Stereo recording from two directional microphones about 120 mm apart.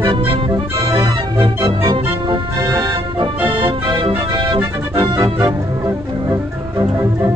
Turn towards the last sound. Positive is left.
turn(degrees=-25)  # may be behind; listen again after turning